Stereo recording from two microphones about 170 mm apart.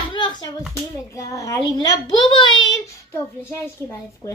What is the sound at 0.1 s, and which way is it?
Hands, 25° left (ahead or behind).